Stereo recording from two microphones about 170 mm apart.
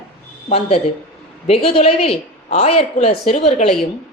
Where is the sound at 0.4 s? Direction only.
35° left (ahead or behind).